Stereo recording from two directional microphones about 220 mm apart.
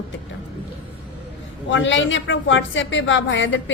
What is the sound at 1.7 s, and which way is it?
Speech, 60° left (ahead or behind).